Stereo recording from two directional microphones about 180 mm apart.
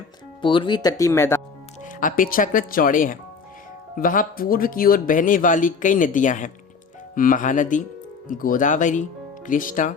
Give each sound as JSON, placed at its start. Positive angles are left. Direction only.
{"t": 0.4, "sound": "speech", "side_deg": 25}
{"t": 1.8, "sound": "speech", "side_deg": 50}